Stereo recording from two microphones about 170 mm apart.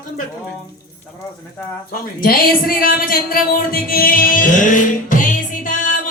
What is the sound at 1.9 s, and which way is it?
Speech, 60° left (ahead or behind).